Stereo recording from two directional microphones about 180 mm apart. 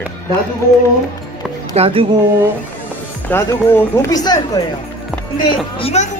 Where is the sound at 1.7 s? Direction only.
30° right (ahead or behind).